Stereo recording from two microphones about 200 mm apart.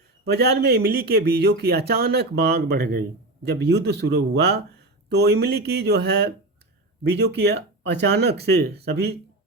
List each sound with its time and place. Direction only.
0.3 s speech: 55° right (ahead or behind)